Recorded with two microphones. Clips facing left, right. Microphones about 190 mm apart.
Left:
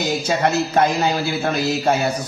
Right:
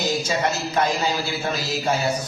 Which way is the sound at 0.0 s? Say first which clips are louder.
Left 3 dB; 60° left (ahead or behind).